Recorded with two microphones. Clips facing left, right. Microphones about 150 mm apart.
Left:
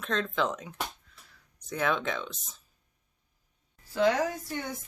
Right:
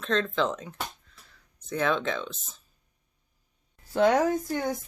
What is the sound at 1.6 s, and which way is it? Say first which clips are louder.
Speech: right 3 dB; 10° left (ahead or behind).